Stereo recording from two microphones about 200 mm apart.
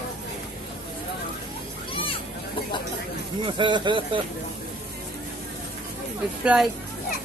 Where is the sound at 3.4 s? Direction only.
25° right (ahead or behind).